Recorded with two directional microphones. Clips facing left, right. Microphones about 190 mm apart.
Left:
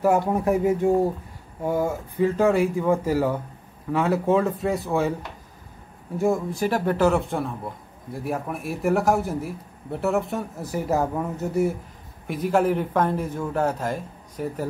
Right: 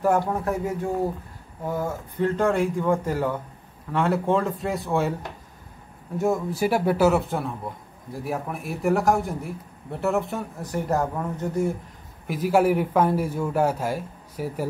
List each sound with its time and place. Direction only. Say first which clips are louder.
0.0 s a man's voice: left 2 dB; 15° left (ahead or behind)
6.1 s a man's voice: left 1 dB; centre (ahead or behind)
12.3 s a man's voice: right 1 dB; 5° right (ahead or behind)